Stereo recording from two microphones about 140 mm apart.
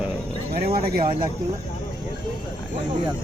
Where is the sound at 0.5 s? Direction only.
90° right.